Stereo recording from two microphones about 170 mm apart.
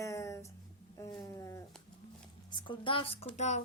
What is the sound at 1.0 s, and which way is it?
A woman's voice, 20° left (ahead or behind).